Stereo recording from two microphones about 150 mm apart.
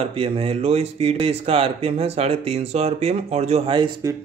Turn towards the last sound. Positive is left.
turn(degrees=-35)  # may be behind; listen again after turning